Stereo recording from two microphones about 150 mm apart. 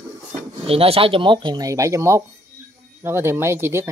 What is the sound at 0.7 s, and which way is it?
Speech, 40° right (ahead or behind).